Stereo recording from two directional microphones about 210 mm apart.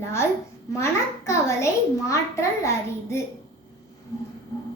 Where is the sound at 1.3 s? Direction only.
15° left (ahead or behind).